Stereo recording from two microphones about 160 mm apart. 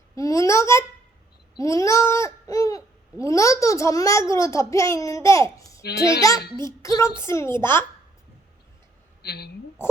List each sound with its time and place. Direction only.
0.2 s a sound: 20° left (ahead or behind)
1.5 s speech: 20° left (ahead or behind)
5.8 s a child's voice: 90° left
6.8 s a woman's voice: 20° left (ahead or behind)
9.2 s a child's voice: 90° left